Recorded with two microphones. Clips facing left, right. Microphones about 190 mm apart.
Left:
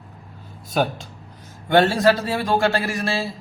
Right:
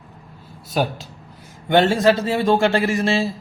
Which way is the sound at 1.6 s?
20° right (ahead or behind).